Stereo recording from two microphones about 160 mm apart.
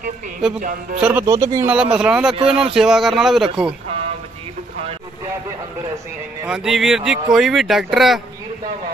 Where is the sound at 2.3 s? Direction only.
35° right (ahead or behind).